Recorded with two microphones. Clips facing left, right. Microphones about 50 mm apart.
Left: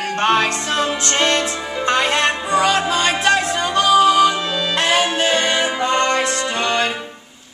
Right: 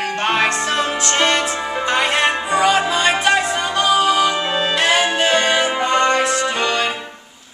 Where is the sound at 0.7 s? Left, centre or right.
Right.